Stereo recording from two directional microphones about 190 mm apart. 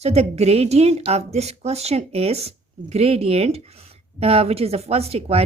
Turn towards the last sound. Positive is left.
turn(degrees=-30)  # may be behind; listen again after turning